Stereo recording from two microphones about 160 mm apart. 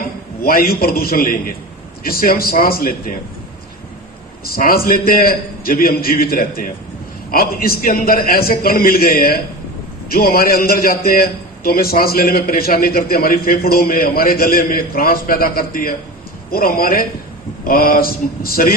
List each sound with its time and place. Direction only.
0.4 s a man's voice: 70° left (ahead or behind)
4.4 s a man's voice: 70° left (ahead or behind)